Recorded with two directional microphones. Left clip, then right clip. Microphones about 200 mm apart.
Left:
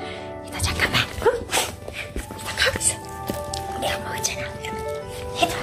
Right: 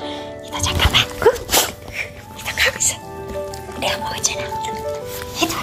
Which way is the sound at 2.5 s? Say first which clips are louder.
Right 4 dB; 15° right (ahead or behind).